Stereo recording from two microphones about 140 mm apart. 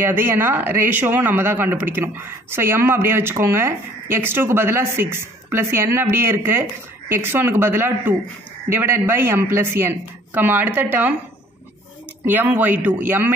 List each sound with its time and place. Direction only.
0.0 s speech: 15° right (ahead or behind)
12.3 s speech: 15° right (ahead or behind)